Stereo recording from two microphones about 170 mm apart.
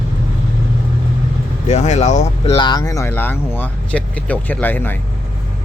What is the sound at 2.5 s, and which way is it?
Speech, 25° left (ahead or behind).